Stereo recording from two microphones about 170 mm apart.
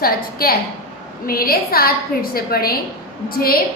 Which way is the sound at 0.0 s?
60° left (ahead or behind).